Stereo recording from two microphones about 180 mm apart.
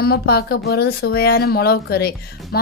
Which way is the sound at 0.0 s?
60° left (ahead or behind).